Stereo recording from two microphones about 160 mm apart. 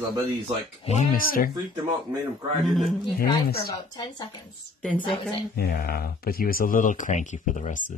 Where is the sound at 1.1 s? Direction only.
60° left (ahead or behind).